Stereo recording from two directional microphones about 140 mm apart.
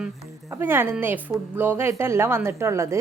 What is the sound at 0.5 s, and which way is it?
A woman's voice, 15° right (ahead or behind).